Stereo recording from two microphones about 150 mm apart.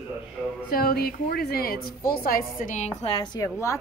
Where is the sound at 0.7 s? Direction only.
90° left; by 3.1 s 50° left (ahead or behind).